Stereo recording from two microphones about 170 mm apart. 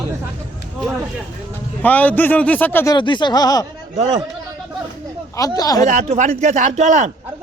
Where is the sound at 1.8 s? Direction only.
10° left (ahead or behind).